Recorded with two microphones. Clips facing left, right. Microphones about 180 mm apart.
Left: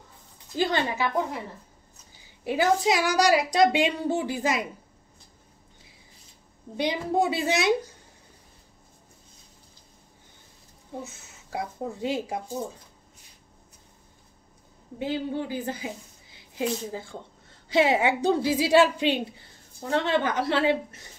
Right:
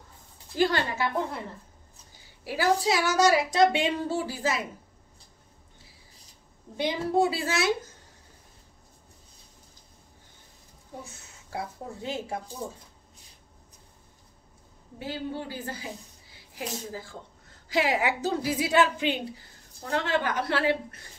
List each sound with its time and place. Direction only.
0.6 s speech: 20° left (ahead or behind)
2.4 s speech: 20° left (ahead or behind)
6.8 s speech: 15° left (ahead or behind)
11.5 s speech: 20° left (ahead or behind)
15.0 s speech: 20° left (ahead or behind)